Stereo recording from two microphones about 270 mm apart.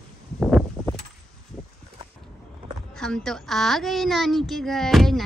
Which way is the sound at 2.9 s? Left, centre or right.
Centre.